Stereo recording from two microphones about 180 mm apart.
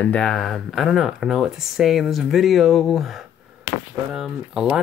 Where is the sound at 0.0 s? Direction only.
5° left (ahead or behind).